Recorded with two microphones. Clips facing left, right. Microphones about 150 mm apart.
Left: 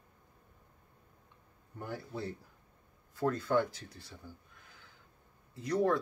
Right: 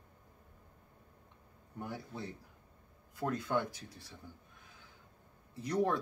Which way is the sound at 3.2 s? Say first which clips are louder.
Left 4 dB; 15° right (ahead or behind).